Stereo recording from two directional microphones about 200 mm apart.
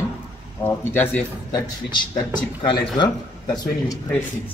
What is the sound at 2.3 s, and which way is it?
Speech, 25° left (ahead or behind).